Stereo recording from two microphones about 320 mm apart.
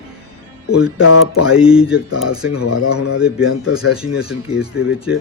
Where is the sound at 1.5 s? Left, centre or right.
Centre.